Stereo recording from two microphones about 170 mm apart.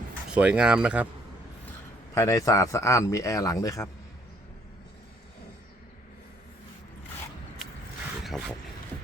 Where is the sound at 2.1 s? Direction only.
20° left (ahead or behind).